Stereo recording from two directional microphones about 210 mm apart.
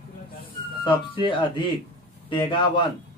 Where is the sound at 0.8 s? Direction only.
25° left (ahead or behind).